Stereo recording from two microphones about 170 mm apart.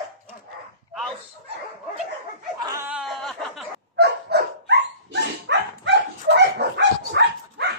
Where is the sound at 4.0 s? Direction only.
85° right.